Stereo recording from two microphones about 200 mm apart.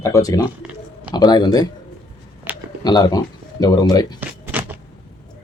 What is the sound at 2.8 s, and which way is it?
Speech, 20° left (ahead or behind).